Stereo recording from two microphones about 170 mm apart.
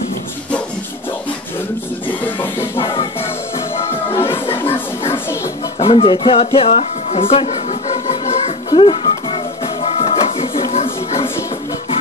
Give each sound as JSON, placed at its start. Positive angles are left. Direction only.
{"t": 2.8, "sound": "music", "side_deg": 30}
{"t": 4.6, "sound": "music", "side_deg": 10}
{"t": 5.8, "sound": "music", "side_deg": 30}